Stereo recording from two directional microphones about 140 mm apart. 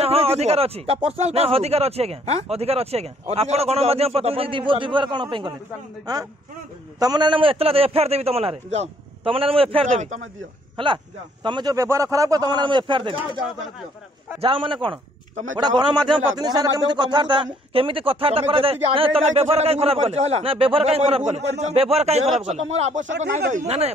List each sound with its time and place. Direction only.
0.0 s speech: 45° right (ahead or behind)
9.8 s speech: 60° right (ahead or behind)
10.8 s a man's voice: 35° right (ahead or behind)
11.7 s speech: 20° right (ahead or behind)
14.4 s a man's voice: 35° right (ahead or behind)